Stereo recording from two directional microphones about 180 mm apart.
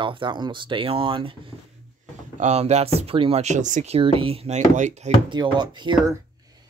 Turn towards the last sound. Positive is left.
turn(degrees=-25)  # may be behind; listen again after turning